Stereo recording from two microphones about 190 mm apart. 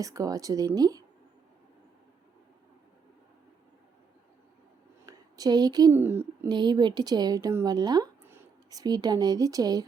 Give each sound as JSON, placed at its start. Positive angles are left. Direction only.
{"t": 0.0, "sound": "speech", "side_deg": -15}
{"t": 5.0, "sound": "speech", "side_deg": -20}
{"t": 6.5, "sound": "speech", "side_deg": -20}